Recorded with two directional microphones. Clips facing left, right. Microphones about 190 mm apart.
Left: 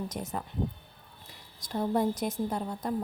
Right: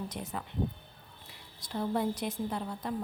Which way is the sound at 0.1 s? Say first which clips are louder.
Left 3 dB; 45° left (ahead or behind).